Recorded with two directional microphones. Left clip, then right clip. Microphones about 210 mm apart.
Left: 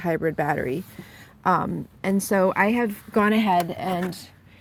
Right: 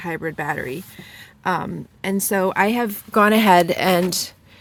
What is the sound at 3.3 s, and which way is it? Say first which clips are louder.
Speech: right 7 dB; 50° right (ahead or behind).